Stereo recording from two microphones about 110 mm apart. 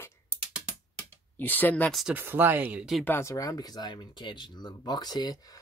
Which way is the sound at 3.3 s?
30° left (ahead or behind).